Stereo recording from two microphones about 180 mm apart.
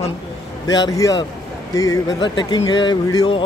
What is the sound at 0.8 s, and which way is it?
Speech, 20° left (ahead or behind).